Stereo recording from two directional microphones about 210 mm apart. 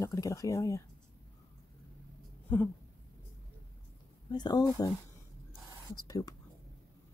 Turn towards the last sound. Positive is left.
turn(degrees=15)  # may be behind; listen again after turning